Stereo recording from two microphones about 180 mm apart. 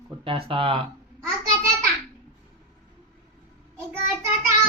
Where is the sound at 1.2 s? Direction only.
15° right (ahead or behind).